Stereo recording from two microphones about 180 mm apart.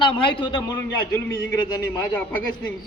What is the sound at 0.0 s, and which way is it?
Speech, 25° left (ahead or behind).